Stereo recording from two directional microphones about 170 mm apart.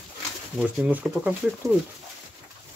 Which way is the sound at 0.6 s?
10° right (ahead or behind).